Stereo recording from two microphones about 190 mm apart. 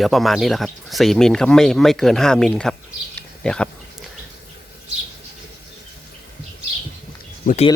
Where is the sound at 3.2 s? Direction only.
5° left (ahead or behind).